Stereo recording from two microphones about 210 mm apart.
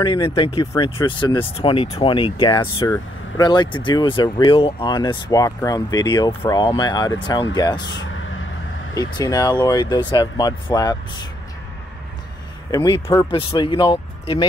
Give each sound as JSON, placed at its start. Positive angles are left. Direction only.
{"t": 0.0, "sound": "speech", "side_deg": 25}
{"t": 8.9, "sound": "speech", "side_deg": 20}
{"t": 12.7, "sound": "speech", "side_deg": 20}